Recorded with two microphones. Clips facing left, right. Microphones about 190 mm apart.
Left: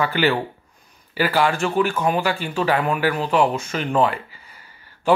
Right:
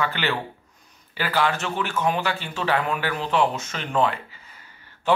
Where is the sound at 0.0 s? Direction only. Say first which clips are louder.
Left 6 dB; 10° left (ahead or behind).